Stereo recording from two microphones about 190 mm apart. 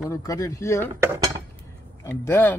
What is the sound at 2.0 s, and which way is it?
Speech, 15° left (ahead or behind).